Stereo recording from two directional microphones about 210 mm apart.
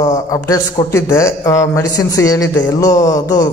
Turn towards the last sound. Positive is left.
turn(degrees=15)  # may be behind; listen again after turning